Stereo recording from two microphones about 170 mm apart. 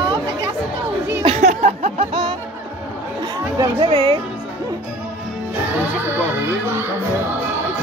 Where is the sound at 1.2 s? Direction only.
40° right (ahead or behind).